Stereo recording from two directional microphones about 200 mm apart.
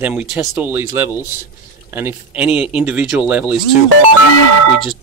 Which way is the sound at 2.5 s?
30° left (ahead or behind).